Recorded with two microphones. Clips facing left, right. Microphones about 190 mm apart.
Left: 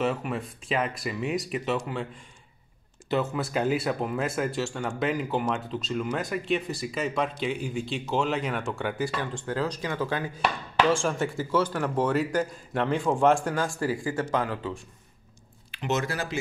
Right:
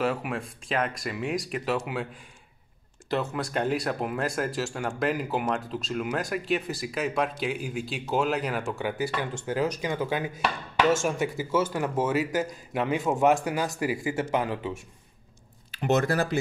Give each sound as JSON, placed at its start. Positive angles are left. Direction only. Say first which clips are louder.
{"t": 0.0, "sound": "speech", "louder": "even", "side_deg": 0}
{"t": 3.1, "sound": "speech", "louder": "left 2 dB", "side_deg": 5}
{"t": 11.3, "sound": "speech", "louder": "even", "side_deg": -5}
{"t": 15.7, "sound": "speech", "louder": "right 5 dB", "side_deg": -55}